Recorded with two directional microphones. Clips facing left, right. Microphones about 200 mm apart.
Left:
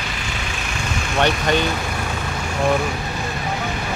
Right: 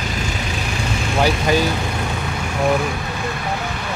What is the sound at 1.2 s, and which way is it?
Speech, 5° right (ahead or behind).